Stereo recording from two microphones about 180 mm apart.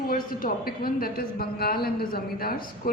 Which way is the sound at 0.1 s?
55° left (ahead or behind).